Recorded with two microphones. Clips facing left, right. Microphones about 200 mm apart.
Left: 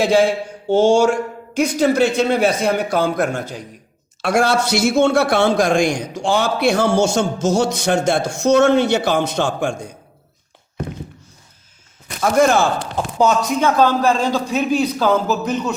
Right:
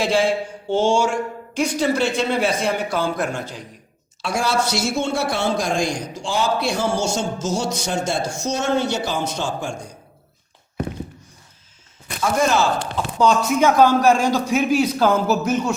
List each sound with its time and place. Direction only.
0.0 s speech: 45° left (ahead or behind)
0.8 s a sound: 40° left (ahead or behind)
1.5 s speech: 45° left (ahead or behind)
4.2 s a man's voice: 65° left (ahead or behind)
12.2 s speech: 55° left (ahead or behind)
12.8 s speech: 5° left (ahead or behind)
13.6 s a man's voice: 10° right (ahead or behind)